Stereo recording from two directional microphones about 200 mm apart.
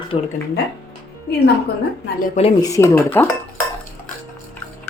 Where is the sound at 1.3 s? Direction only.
55° left (ahead or behind).